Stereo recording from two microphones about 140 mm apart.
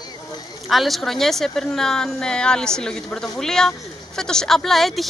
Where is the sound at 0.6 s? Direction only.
Centre (ahead or behind).